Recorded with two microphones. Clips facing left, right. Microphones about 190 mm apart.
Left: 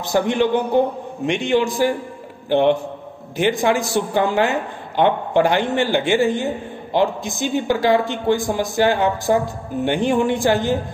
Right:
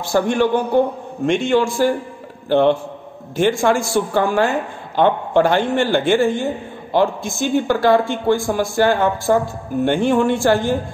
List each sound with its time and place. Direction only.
0.0 s a man's voice: 20° left (ahead or behind)